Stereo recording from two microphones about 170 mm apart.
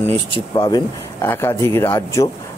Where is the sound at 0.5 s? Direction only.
25° left (ahead or behind).